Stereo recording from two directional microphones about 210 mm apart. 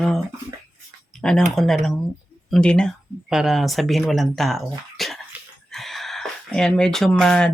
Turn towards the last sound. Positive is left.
turn(degrees=5)  # may be behind; listen again after turning